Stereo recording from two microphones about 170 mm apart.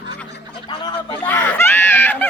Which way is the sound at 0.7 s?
25° left (ahead or behind).